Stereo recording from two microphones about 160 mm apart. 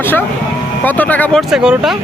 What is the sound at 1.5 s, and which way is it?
Speech, centre (ahead or behind).